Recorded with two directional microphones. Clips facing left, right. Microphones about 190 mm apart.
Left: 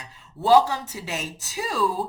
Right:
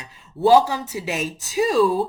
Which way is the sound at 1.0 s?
15° right (ahead or behind).